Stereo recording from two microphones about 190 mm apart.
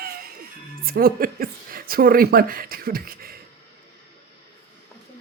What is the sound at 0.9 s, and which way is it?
Speech, 50° right (ahead or behind).